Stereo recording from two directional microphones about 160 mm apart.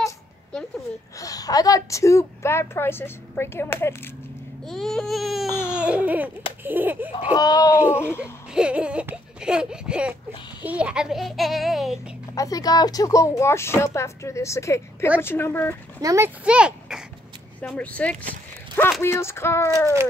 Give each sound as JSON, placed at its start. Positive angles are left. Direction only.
{"t": 1.1, "sound": "a woman's voice", "side_deg": 20}
{"t": 4.6, "sound": "a child's voice", "side_deg": 5}
{"t": 5.5, "sound": "baby cry", "side_deg": 15}
{"t": 5.8, "sound": "baby cry", "side_deg": -10}
{"t": 6.6, "sound": "a sound", "side_deg": -10}
{"t": 7.3, "sound": "a woman's voice", "side_deg": 25}
{"t": 8.2, "sound": "a child's voice", "side_deg": -5}
{"t": 12.4, "sound": "a woman's voice", "side_deg": 20}
{"t": 16.0, "sound": "a child's voice", "side_deg": -20}
{"t": 16.4, "sound": "a sound", "side_deg": -5}
{"t": 17.6, "sound": "a woman's voice", "side_deg": 10}